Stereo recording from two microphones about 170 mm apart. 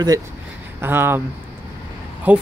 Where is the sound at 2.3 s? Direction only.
10° right (ahead or behind).